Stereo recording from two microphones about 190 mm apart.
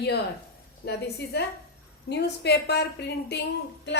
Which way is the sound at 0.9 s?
60° left (ahead or behind).